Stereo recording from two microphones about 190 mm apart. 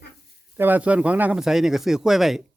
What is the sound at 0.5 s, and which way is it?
Speech, 10° right (ahead or behind).